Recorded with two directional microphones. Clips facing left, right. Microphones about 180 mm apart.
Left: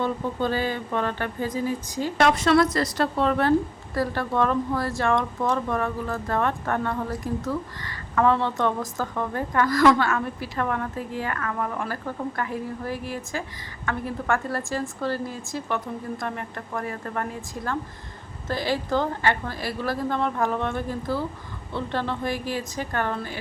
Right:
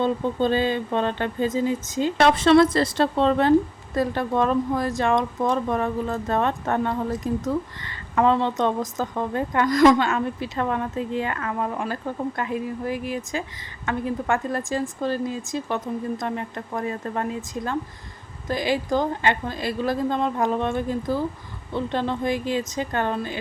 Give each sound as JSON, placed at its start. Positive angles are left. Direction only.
{"t": 0.0, "sound": "speech", "side_deg": -20}